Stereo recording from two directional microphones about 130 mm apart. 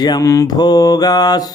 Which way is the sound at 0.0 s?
30° left (ahead or behind).